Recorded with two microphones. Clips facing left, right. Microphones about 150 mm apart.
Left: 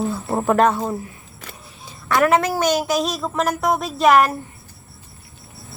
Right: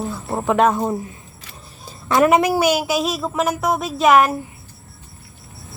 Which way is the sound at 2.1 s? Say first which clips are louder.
Right 2 dB; 15° right (ahead or behind).